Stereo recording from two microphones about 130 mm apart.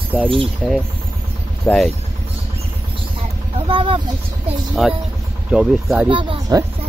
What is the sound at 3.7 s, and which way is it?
Speech, 45° right (ahead or behind).